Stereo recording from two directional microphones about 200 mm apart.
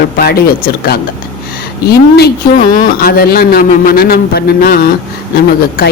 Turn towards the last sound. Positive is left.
turn(degrees=50)  # may be behind; listen again after turning